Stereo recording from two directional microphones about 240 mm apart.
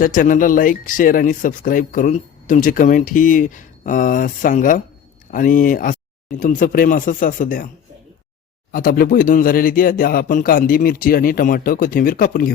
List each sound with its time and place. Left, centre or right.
0.0 s speech: left
8.7 s speech: left